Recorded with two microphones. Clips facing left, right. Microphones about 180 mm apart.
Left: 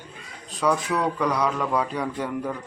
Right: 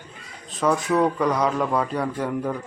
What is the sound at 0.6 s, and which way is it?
A man's voice, centre (ahead or behind).